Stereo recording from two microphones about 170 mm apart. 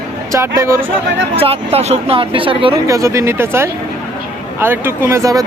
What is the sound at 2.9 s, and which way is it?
A man's voice, 20° right (ahead or behind).